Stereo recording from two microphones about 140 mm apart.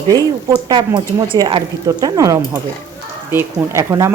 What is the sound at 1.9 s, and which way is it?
A woman's voice, 25° right (ahead or behind).